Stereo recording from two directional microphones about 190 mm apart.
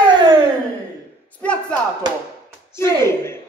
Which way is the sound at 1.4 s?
5° left (ahead or behind).